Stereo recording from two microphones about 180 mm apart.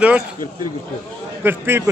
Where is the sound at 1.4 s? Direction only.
15° right (ahead or behind).